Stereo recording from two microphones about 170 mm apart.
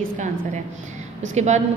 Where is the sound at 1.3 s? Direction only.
40° right (ahead or behind).